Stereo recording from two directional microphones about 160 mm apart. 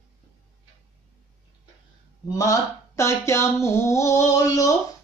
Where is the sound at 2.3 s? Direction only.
20° left (ahead or behind).